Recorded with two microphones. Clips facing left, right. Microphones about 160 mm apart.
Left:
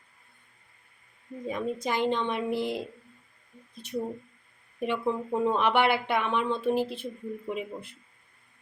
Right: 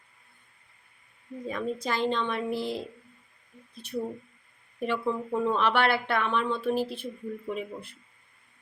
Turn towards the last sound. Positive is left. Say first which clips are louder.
# even
turn(degrees=15)  # may be behind; listen again after turning